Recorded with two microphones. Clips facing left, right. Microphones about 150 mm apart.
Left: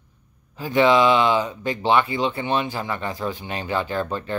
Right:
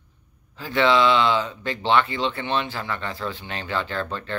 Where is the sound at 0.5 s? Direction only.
15° left (ahead or behind).